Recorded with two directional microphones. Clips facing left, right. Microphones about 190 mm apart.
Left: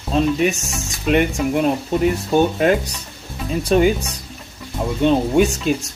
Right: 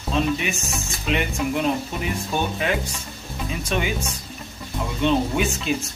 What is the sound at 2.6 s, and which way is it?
Speech, 45° left (ahead or behind).